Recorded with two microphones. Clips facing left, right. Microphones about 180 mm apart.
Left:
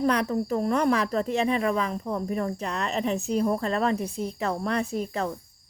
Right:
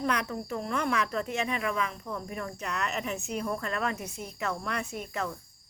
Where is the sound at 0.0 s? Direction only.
35° left (ahead or behind).